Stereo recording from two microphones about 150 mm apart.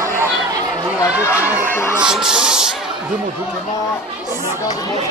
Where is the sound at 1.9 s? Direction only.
5° right (ahead or behind).